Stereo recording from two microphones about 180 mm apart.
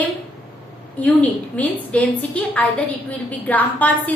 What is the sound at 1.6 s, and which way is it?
A woman's voice, 10° left (ahead or behind).